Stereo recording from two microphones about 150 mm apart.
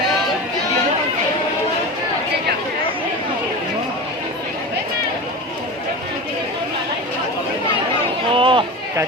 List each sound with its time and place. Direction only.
8.3 s run: 35° right (ahead or behind)